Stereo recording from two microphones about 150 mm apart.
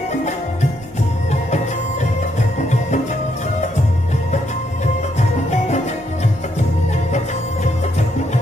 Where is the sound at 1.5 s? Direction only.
50° left (ahead or behind).